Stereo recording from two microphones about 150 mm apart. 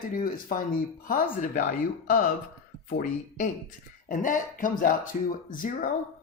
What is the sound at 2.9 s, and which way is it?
Speech, 65° left (ahead or behind).